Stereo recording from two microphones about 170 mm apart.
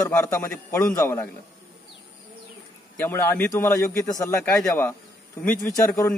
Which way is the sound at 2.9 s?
10° left (ahead or behind).